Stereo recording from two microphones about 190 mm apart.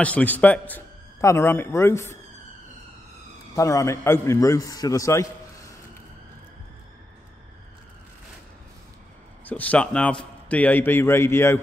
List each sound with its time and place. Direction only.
0.0 s a man's voice: 10° left (ahead or behind)
3.5 s a man's voice: 15° left (ahead or behind)
9.4 s a man's voice: 10° left (ahead or behind)